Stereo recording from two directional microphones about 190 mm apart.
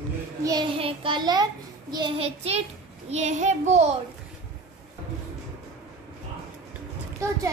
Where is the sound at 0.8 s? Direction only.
25° right (ahead or behind).